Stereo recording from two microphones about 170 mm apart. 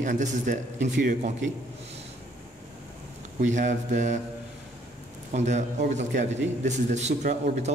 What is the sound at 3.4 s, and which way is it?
Speech, 45° right (ahead or behind).